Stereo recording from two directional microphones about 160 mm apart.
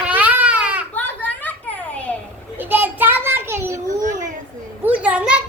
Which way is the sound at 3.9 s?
50° right (ahead or behind).